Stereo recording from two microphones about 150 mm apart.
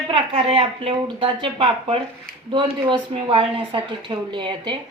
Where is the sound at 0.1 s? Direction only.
35° right (ahead or behind).